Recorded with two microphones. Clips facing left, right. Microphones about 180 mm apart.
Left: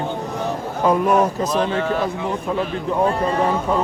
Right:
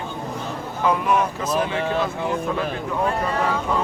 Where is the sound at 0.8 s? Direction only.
40° left (ahead or behind).